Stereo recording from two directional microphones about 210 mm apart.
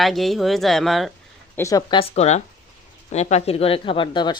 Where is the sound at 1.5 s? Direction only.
15° left (ahead or behind).